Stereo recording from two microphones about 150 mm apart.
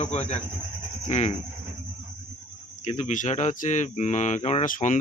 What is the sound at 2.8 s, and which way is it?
Speech, 50° left (ahead or behind).